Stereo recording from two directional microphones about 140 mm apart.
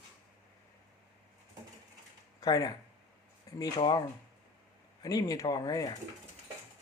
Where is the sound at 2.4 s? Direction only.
25° left (ahead or behind).